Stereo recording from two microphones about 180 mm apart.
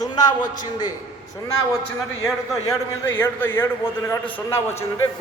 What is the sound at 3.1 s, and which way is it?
A man's voice, 10° left (ahead or behind).